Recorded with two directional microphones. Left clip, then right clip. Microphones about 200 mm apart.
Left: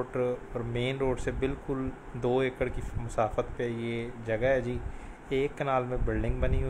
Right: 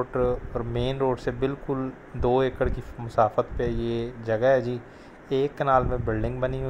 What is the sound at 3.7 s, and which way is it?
Speech, 20° right (ahead or behind).